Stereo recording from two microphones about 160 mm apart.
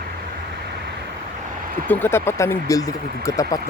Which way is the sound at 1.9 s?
15° left (ahead or behind).